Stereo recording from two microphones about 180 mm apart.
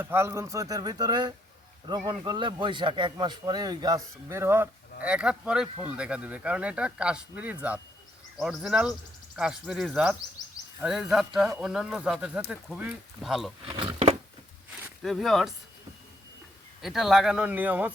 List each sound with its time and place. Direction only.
0.0 s a man's voice: 15° right (ahead or behind)
13.7 s a sound: 30° right (ahead or behind)
15.0 s speech: centre (ahead or behind)
16.8 s speech: centre (ahead or behind)